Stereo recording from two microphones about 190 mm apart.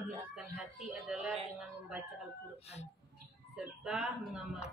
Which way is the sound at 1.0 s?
5° right (ahead or behind).